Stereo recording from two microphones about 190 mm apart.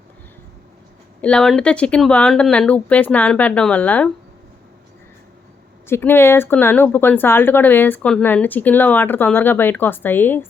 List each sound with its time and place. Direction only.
1.2 s speech: 5° left (ahead or behind)
5.9 s speech: 10° left (ahead or behind)